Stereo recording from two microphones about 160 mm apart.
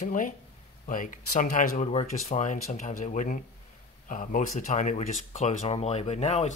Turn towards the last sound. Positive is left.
turn(degrees=45)  # may be behind; listen again after turning